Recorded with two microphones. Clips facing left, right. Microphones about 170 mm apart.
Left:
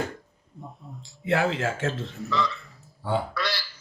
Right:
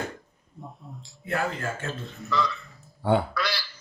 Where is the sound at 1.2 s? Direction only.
80° left.